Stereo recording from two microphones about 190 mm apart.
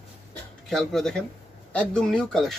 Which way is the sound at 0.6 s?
Centre (ahead or behind).